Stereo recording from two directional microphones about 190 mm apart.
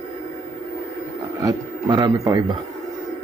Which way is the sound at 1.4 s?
20° right (ahead or behind).